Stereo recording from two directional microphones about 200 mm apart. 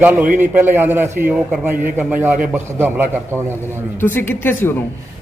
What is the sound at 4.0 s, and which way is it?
Speech, 10° left (ahead or behind).